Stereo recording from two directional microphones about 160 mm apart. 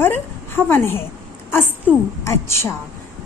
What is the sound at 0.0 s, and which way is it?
A woman's voice, 15° left (ahead or behind).